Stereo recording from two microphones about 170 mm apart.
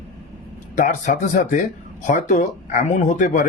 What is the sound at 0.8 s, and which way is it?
Speech, 45° left (ahead or behind).